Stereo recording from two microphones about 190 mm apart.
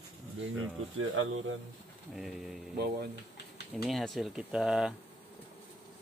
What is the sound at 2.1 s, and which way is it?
Speech, centre (ahead or behind).